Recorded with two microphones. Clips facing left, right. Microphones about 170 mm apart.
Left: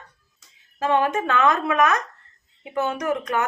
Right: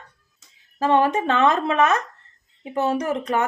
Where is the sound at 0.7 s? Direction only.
35° right (ahead or behind).